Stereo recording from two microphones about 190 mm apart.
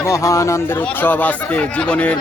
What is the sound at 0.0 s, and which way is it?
Speech, 15° left (ahead or behind).